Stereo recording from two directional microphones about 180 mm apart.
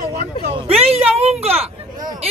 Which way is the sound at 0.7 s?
35° right (ahead or behind).